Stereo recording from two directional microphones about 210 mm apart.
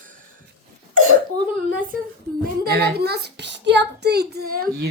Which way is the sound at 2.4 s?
50° right (ahead or behind).